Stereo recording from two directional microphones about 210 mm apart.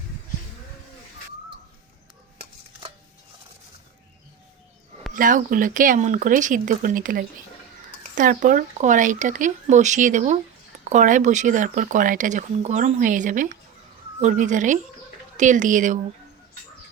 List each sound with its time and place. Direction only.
5.1 s speech: 40° right (ahead or behind)